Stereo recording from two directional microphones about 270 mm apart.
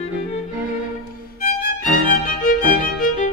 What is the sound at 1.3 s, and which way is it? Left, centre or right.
Music, left.